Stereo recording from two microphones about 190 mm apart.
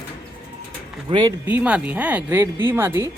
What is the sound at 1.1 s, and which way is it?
Speech, 25° right (ahead or behind).